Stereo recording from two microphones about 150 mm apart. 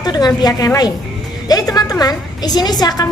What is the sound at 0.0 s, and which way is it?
A woman's voice, 25° left (ahead or behind).